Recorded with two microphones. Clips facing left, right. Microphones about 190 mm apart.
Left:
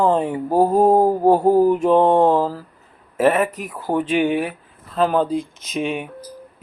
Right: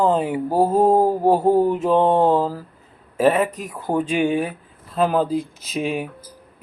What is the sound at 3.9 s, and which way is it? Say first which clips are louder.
Speech: left 1 dB; 5° left (ahead or behind).